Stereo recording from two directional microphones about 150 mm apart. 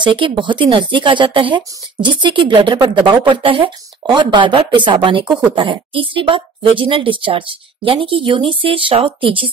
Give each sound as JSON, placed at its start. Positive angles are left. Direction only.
{"t": 0.0, "sound": "speech", "side_deg": -35}